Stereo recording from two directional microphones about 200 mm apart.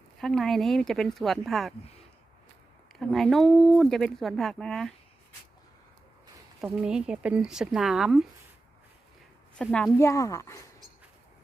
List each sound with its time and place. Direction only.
0.2 s speech: centre (ahead or behind)
2.9 s speech: centre (ahead or behind)
6.6 s speech: 5° right (ahead or behind)
9.6 s a woman's voice: 5° left (ahead or behind)